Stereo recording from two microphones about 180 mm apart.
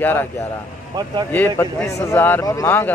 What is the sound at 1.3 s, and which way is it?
Speech, 10° left (ahead or behind).